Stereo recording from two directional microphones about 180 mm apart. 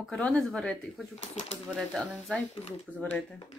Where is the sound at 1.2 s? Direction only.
40° left (ahead or behind).